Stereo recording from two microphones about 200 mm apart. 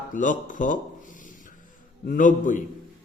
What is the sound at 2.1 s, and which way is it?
Speech, 40° left (ahead or behind).